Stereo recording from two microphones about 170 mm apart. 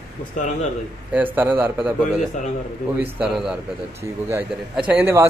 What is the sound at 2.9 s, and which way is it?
A man's voice, 5° right (ahead or behind).